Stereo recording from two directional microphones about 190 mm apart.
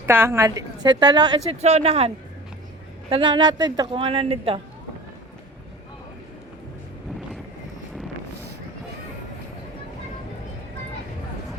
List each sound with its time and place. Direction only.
0.0 s a woman's voice: 15° right (ahead or behind)
1.5 s a woman's voice: 35° right (ahead or behind)